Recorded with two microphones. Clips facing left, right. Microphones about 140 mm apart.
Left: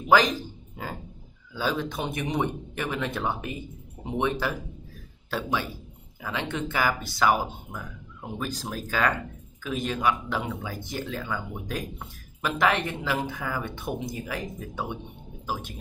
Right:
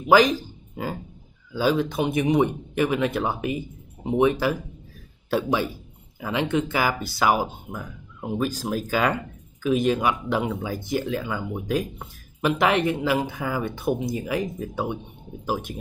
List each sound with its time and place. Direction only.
1.5 s speech: 10° right (ahead or behind)